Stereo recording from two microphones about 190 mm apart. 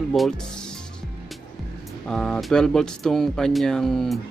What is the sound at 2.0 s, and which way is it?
Speech, 5° left (ahead or behind).